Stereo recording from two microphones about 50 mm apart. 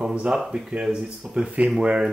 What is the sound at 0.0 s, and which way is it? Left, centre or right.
Speech, right.